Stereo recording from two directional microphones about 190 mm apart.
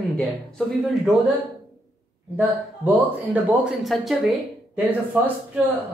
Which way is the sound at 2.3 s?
10° right (ahead or behind).